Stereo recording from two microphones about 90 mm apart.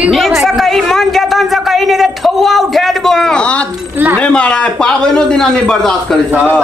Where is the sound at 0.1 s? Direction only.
Centre (ahead or behind).